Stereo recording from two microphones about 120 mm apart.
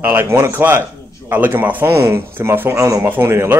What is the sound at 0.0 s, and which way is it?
A man's voice, 20° right (ahead or behind).